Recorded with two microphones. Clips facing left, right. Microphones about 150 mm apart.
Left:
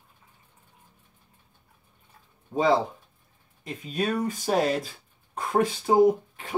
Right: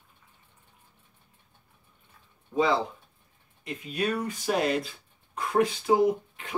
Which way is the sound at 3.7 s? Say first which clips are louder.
Left 1 dB; 40° left (ahead or behind).